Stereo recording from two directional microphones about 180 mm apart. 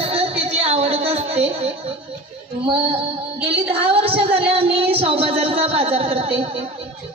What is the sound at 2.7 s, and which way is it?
A woman's voice, 30° right (ahead or behind).